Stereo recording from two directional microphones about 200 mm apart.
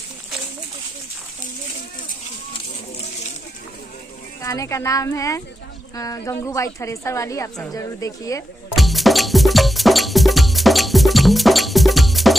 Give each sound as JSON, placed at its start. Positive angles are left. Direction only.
{"t": 4.4, "sound": "speech", "side_deg": 15}
{"t": 8.7, "sound": "cowbell", "side_deg": 0}